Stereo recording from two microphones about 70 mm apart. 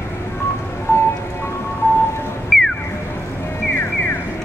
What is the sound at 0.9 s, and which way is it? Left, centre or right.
Vehicle, left.